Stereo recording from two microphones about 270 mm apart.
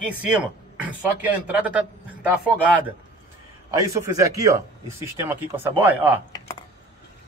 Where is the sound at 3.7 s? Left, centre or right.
Centre.